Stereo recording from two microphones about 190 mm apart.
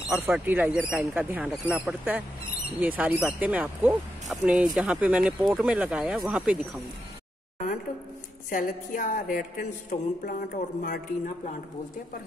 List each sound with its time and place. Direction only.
0.1 s speech: 10° right (ahead or behind)
8.5 s speech: 45° left (ahead or behind)